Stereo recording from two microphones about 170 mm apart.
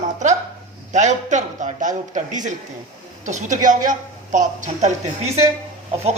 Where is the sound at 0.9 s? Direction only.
45° right (ahead or behind).